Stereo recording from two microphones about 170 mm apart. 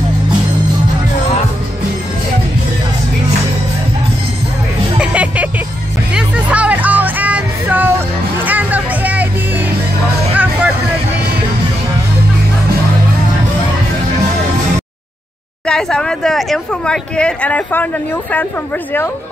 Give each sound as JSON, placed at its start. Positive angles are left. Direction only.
{"t": 5.0, "sound": "music", "side_deg": -10}
{"t": 10.3, "sound": "music", "side_deg": -10}
{"t": 15.6, "sound": "speech", "side_deg": 5}